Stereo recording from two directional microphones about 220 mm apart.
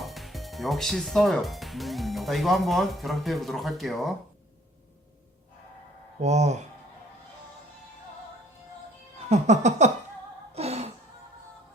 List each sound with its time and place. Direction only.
0.0 s speech: centre (ahead or behind)
6.2 s cat: 30° right (ahead or behind)
9.3 s cat: 30° right (ahead or behind)
10.5 s a sound: 30° right (ahead or behind)